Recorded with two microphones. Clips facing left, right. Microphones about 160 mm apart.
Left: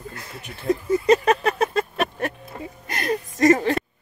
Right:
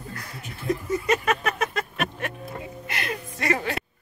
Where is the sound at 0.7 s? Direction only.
30° left (ahead or behind).